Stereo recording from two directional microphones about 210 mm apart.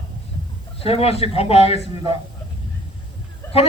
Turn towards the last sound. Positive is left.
turn(degrees=10)  # may be behind; listen again after turning